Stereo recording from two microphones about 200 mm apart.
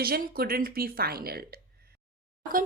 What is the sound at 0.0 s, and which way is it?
Speech, 50° right (ahead or behind).